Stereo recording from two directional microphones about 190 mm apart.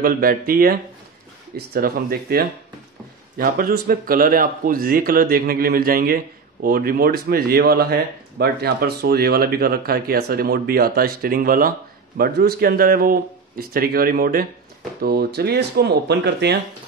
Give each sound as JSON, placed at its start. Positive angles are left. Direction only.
{"t": 0.0, "sound": "speech", "side_deg": -50}